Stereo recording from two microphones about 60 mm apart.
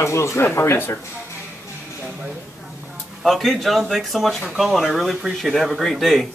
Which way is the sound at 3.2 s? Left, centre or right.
Centre.